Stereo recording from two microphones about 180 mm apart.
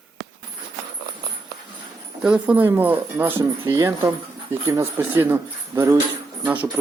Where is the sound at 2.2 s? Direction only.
10° right (ahead or behind).